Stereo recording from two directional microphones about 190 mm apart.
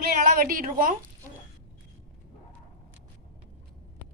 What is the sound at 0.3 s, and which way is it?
Speech, 50° right (ahead or behind).